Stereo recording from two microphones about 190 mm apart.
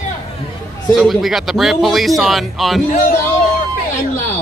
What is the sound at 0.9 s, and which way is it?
Speech, centre (ahead or behind).